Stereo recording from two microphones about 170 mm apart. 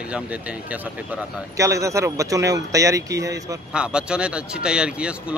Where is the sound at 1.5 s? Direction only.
20° right (ahead or behind).